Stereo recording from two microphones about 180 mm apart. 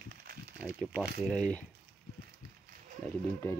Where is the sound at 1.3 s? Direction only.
5° left (ahead or behind).